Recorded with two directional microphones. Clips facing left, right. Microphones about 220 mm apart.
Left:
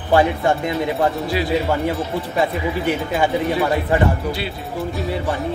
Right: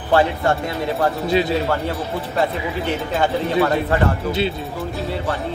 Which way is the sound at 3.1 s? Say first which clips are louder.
Left 1 dB; 15° left (ahead or behind).